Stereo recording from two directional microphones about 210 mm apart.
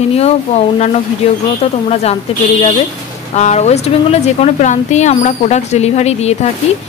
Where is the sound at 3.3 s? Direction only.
30° left (ahead or behind).